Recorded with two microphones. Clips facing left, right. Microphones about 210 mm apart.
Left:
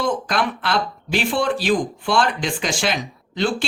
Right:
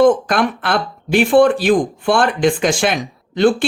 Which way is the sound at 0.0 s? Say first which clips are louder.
Right 9 dB; 50° right (ahead or behind).